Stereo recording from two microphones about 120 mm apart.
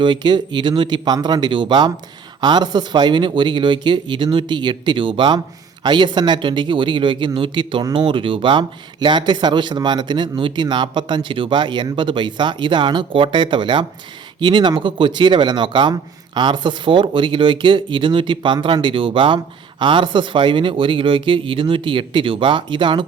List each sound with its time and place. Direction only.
0.0 s a man's voice: 40° right (ahead or behind)